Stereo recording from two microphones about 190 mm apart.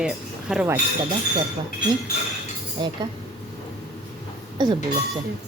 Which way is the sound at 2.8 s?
25° right (ahead or behind).